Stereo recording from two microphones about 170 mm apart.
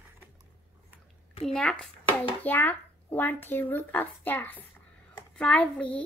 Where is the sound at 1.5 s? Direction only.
5° left (ahead or behind).